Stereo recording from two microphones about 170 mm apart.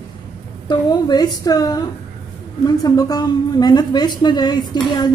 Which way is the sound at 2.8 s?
20° left (ahead or behind).